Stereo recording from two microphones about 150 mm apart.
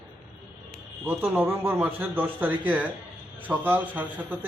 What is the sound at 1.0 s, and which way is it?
A man's voice, 10° right (ahead or behind).